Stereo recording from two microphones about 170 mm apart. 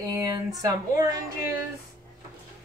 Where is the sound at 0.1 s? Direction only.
20° right (ahead or behind).